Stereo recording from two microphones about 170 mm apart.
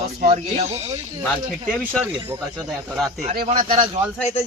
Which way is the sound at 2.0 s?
15° right (ahead or behind).